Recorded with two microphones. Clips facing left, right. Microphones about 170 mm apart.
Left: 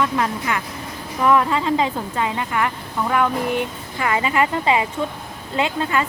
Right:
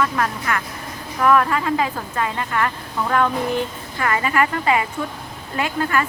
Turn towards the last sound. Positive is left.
turn(degrees=20)  # may be behind; listen again after turning